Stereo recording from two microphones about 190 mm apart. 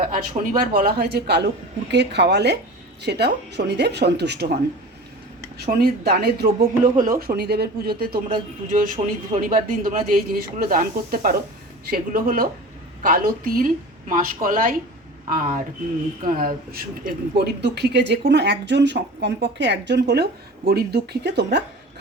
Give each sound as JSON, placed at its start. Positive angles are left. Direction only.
{"t": 0.1, "sound": "speech", "side_deg": -45}
{"t": 5.5, "sound": "speech", "side_deg": -55}